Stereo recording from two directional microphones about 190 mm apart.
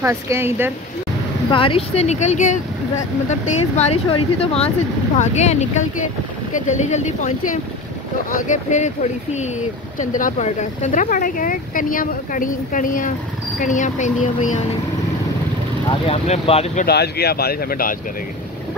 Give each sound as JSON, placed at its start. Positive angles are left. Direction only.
{"t": 0.0, "sound": "speech", "side_deg": -15}
{"t": 1.5, "sound": "speech", "side_deg": 30}
{"t": 15.9, "sound": "speech", "side_deg": 30}
{"t": 16.8, "sound": "speech", "side_deg": 55}